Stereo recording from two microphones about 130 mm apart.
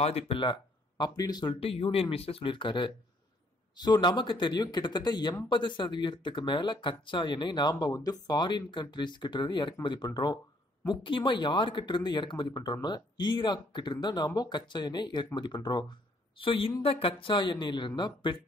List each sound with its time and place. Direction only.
0.0 s speech: 50° left (ahead or behind)
0.4 s speech: 35° left (ahead or behind)